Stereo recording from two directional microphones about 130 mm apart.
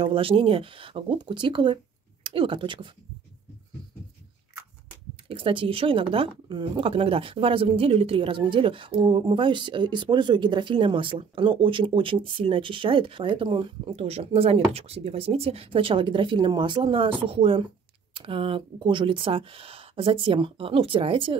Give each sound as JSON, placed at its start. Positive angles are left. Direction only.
{"t": 0.0, "sound": "speech", "side_deg": -45}
{"t": 5.3, "sound": "speech", "side_deg": -40}
{"t": 13.9, "sound": "speech", "side_deg": -55}